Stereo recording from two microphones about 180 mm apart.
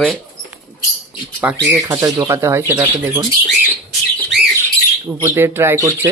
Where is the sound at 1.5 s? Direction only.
5° right (ahead or behind).